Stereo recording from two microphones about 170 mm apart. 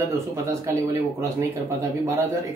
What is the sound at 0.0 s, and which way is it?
Speech, 20° right (ahead or behind).